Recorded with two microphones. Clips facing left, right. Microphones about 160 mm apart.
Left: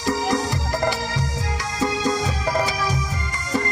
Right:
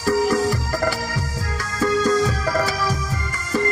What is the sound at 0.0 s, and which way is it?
Music, 15° left (ahead or behind).